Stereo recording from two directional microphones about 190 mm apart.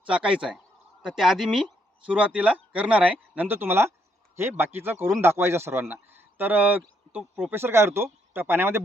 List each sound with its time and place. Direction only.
0.1 s speech: 5° right (ahead or behind)